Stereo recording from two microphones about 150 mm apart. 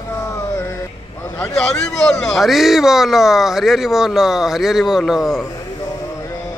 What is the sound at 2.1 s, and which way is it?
Speech, centre (ahead or behind).